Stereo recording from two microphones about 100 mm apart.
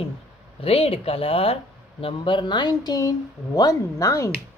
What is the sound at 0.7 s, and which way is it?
A woman's voice, 85° left.